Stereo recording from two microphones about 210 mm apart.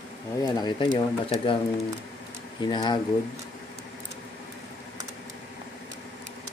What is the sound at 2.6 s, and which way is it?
Speech, 20° left (ahead or behind).